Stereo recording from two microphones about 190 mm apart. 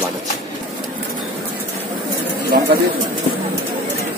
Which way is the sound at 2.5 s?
50° right (ahead or behind).